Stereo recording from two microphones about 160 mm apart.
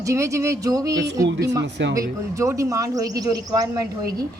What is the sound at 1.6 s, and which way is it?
Speech, 90° right.